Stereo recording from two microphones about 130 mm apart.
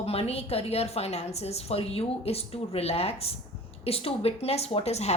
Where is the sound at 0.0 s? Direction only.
50° left (ahead or behind).